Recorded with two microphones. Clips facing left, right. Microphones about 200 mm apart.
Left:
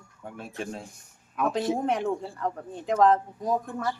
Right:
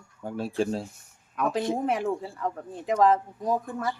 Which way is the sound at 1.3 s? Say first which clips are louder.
Even; centre (ahead or behind).